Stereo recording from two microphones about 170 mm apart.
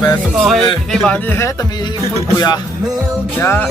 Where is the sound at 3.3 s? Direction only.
10° left (ahead or behind).